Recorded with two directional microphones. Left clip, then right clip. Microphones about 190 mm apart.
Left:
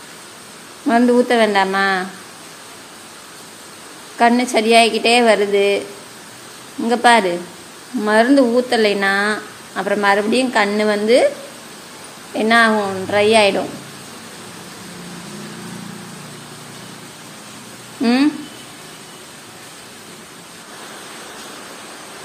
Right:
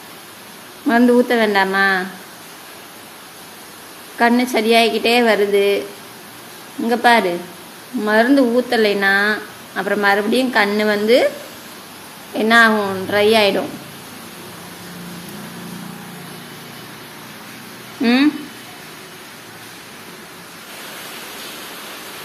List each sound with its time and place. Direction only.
0.8 s speech: centre (ahead or behind)
4.2 s speech: centre (ahead or behind)
6.9 s speech: 5° left (ahead or behind)
12.4 s speech: 5° right (ahead or behind)
18.0 s a sound: 5° left (ahead or behind)